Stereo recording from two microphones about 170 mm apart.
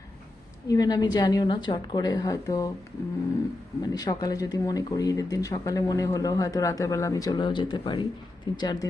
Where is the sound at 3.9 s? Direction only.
25° left (ahead or behind).